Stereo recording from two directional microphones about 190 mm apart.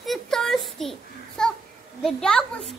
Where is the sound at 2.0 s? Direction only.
5° left (ahead or behind).